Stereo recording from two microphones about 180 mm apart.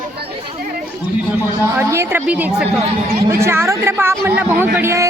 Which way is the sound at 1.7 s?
15° right (ahead or behind).